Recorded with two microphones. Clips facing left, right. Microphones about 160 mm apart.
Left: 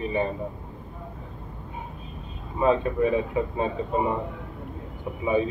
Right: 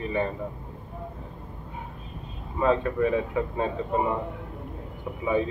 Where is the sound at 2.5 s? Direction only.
15° left (ahead or behind).